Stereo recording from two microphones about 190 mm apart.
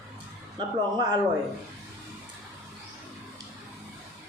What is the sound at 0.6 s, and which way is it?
Speech, 25° right (ahead or behind).